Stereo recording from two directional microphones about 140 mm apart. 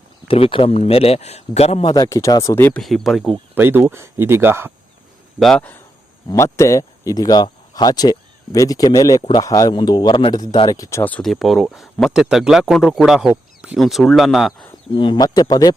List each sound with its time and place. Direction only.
0.3 s speech: 40° left (ahead or behind)
1.9 s speech: 25° left (ahead or behind)
2.8 s speech: centre (ahead or behind)
3.5 s speech: 15° right (ahead or behind)
5.4 s speech: 5° left (ahead or behind)
6.3 s speech: 20° left (ahead or behind)
11.0 s speech: 5° left (ahead or behind)
14.9 s speech: 35° left (ahead or behind)